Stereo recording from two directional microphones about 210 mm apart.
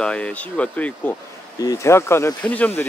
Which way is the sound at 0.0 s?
5° left (ahead or behind).